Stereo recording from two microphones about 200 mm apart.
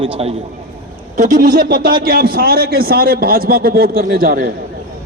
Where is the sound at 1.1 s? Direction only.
40° right (ahead or behind).